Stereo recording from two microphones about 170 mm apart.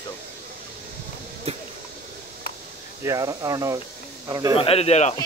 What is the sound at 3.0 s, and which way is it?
Speech, 20° right (ahead or behind).